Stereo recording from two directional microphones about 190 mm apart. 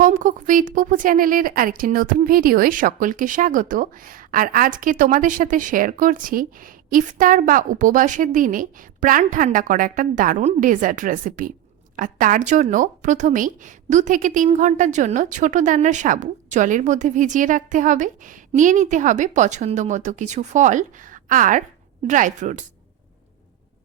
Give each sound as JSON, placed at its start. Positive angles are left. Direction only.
{"t": 0.0, "sound": "a woman's voice", "side_deg": -45}